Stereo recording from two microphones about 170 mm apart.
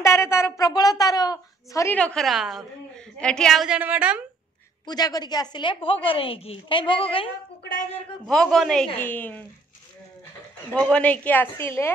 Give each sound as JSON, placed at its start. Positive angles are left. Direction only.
{"t": 0.0, "sound": "a woman's voice", "side_deg": 15}
{"t": 2.0, "sound": "a woman's voice", "side_deg": 5}
{"t": 4.8, "sound": "a woman's voice", "side_deg": 25}
{"t": 8.3, "sound": "a woman's voice", "side_deg": 5}
{"t": 10.7, "sound": "a woman's voice", "side_deg": 5}